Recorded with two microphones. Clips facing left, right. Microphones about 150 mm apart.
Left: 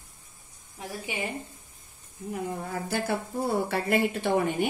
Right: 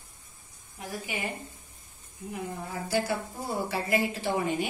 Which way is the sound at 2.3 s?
55° left (ahead or behind).